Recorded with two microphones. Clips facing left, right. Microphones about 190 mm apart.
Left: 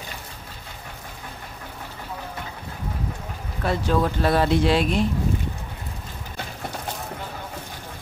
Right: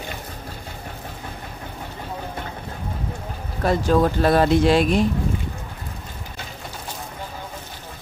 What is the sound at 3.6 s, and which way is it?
Speech, 45° right (ahead or behind).